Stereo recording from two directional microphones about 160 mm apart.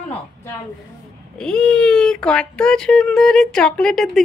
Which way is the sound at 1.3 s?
5° left (ahead or behind).